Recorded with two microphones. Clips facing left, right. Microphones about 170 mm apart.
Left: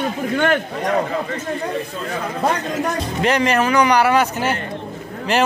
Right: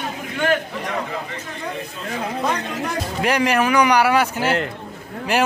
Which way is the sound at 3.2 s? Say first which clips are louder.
Left 1 dB; 10° right (ahead or behind).